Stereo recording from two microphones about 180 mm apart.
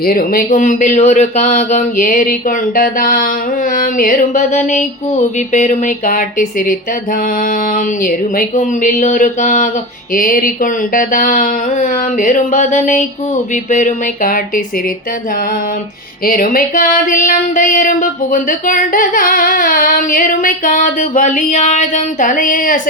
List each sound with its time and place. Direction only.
0.0 s speech: 55° left (ahead or behind)
16.2 s speech: 55° left (ahead or behind)